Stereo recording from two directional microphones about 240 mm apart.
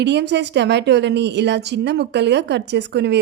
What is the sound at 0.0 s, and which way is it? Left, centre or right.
Speech, right.